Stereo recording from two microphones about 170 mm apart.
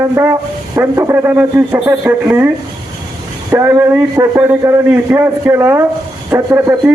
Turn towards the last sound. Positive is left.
turn(degrees=-15)  # may be behind; listen again after turning